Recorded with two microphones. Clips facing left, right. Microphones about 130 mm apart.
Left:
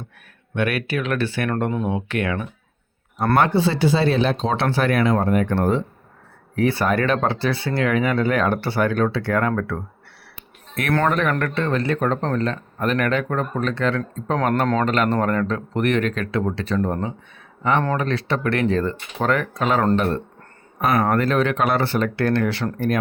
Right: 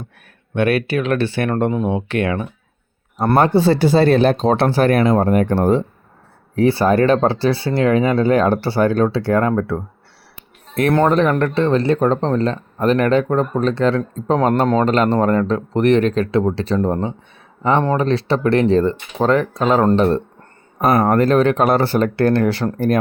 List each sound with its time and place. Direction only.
0.5 s speech: 30° right (ahead or behind)
3.3 s speech: 40° right (ahead or behind)
11.1 s speech: 30° right (ahead or behind)